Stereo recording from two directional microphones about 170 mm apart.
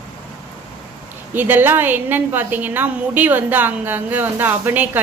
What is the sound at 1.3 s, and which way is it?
A woman's voice, 10° right (ahead or behind).